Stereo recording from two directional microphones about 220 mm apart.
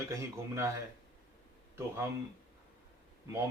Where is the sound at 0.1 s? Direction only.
10° right (ahead or behind).